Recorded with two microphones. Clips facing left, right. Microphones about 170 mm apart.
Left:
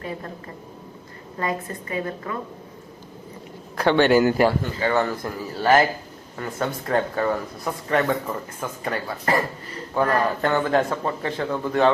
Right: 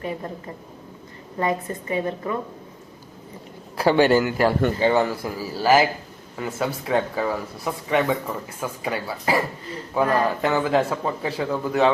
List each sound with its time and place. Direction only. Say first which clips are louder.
1.4 s a woman's voice: right 3 dB; 20° right (ahead or behind)
3.8 s speech: right 1 dB; 5° right (ahead or behind)
4.4 s speech: left 1 dB; 20° left (ahead or behind)
4.8 s speech: left 1 dB; 15° right (ahead or behind)